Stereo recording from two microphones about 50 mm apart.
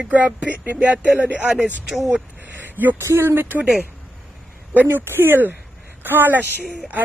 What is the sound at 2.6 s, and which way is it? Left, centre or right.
Speech, right.